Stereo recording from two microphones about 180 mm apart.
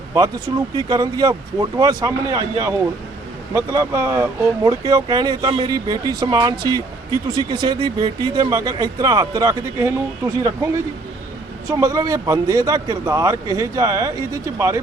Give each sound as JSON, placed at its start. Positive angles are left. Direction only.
{"t": 0.8, "sound": "speech", "side_deg": -20}
{"t": 11.7, "sound": "speech", "side_deg": -15}